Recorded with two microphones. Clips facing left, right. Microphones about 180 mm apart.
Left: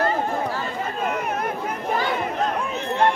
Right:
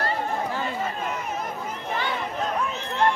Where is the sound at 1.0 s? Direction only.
60° left (ahead or behind).